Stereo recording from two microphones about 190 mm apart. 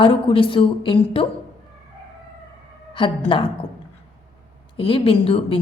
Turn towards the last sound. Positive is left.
turn(degrees=30)  # may be behind; listen again after turning